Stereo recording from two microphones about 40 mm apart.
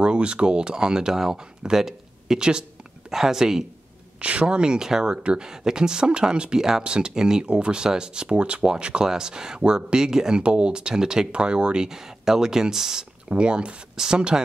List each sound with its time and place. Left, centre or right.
0.0 s speech: right
4.2 s speech: right; by 5.1 s centre
5.1 s speech: right
13.3 s speech: right